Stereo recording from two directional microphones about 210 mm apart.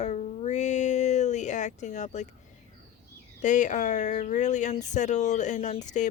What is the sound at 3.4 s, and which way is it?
Speech, 35° left (ahead or behind).